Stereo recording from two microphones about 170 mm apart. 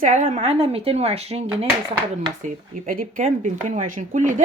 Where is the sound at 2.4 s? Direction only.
50° right (ahead or behind).